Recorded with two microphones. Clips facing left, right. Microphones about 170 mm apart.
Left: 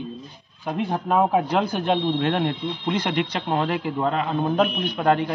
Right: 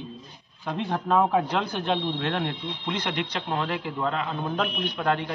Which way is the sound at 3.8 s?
40° left (ahead or behind).